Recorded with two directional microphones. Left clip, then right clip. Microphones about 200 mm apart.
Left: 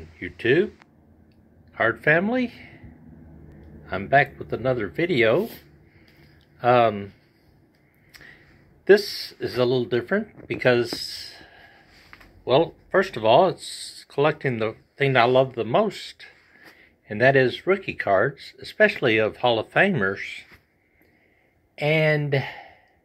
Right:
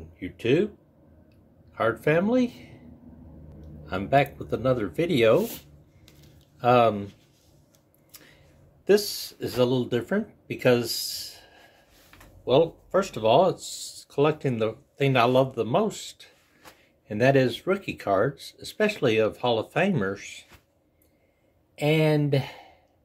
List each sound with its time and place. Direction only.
0.2 s speech: 10° right (ahead or behind)
1.7 s speech: 10° right (ahead or behind)
3.8 s speech: 15° right (ahead or behind)
6.6 s speech: 15° right (ahead or behind)
8.1 s a sound: 10° right (ahead or behind)
8.8 s speech: 10° right (ahead or behind)
21.7 s speech: 5° right (ahead or behind)